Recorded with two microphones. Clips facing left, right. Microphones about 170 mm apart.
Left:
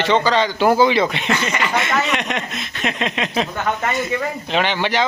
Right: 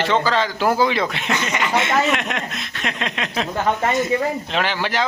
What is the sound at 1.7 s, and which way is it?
Speech, 25° right (ahead or behind).